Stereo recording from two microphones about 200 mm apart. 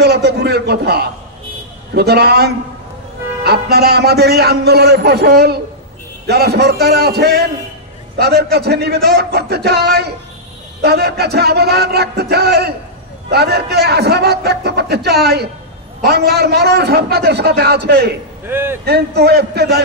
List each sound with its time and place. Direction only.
0.0 s a sound: 55° right (ahead or behind)
2.0 s a man's voice: 55° right (ahead or behind)
18.5 s a man's voice: 10° right (ahead or behind)
18.9 s a man's voice: 55° right (ahead or behind)